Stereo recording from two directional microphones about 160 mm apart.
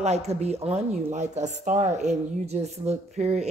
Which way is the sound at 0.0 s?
40° right (ahead or behind).